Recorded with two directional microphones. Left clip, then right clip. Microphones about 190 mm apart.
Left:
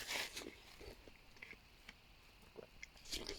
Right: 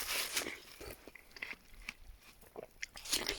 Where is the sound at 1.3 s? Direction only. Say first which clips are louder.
Right 11 dB; 40° right (ahead or behind).